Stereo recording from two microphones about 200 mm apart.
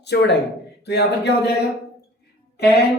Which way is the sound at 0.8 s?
55° left (ahead or behind).